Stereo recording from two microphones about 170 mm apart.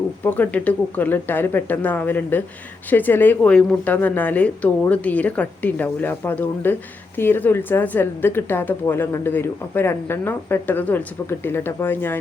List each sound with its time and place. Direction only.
0.3 s a woman's voice: 10° left (ahead or behind)